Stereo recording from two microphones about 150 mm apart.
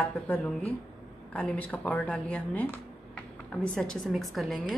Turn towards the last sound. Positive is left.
turn(degrees=0)  # may be behind; listen again after turning